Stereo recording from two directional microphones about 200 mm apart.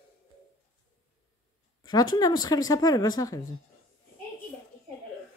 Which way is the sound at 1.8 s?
20° left (ahead or behind).